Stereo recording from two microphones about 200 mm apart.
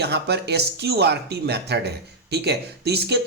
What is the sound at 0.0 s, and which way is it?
Speech, 55° right (ahead or behind).